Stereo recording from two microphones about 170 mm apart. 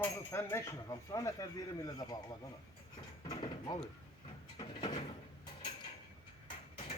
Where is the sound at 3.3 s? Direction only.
25° left (ahead or behind).